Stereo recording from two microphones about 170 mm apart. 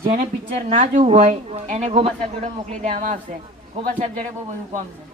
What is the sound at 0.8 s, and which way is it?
A woman's voice, 40° right (ahead or behind).